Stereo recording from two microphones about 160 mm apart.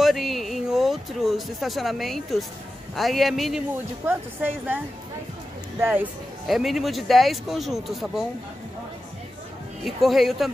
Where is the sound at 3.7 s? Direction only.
15° right (ahead or behind).